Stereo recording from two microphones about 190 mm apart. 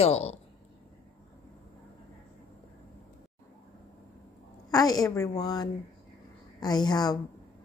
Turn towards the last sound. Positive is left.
turn(degrees=20)  # may be behind; listen again after turning